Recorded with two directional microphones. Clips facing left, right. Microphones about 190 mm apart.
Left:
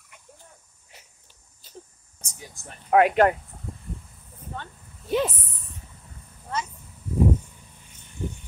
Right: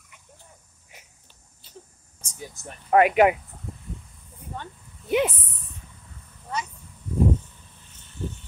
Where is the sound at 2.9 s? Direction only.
5° right (ahead or behind).